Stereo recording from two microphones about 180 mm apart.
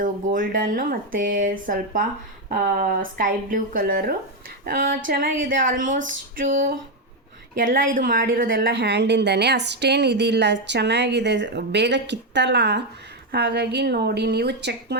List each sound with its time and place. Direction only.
0.0 s a woman's voice: 50° right (ahead or behind); by 14.9 s 70° right (ahead or behind)